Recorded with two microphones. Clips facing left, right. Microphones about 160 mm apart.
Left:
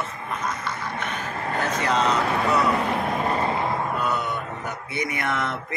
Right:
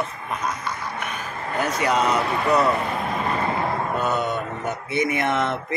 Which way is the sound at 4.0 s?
25° right (ahead or behind).